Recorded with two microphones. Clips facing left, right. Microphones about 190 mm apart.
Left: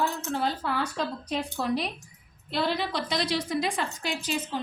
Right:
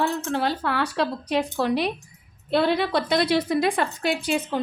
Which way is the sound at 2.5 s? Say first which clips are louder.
Right 7 dB; 60° right (ahead or behind).